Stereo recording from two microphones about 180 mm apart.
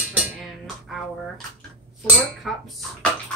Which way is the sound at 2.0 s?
5° right (ahead or behind).